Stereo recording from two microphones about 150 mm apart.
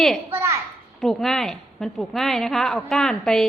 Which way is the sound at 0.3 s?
20° right (ahead or behind).